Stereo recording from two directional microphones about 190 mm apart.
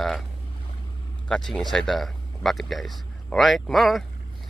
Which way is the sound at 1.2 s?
5° left (ahead or behind).